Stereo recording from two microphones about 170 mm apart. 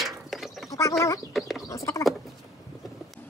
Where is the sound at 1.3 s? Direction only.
Centre (ahead or behind).